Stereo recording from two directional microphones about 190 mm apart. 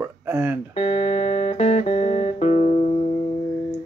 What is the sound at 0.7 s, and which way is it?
Music, 35° left (ahead or behind).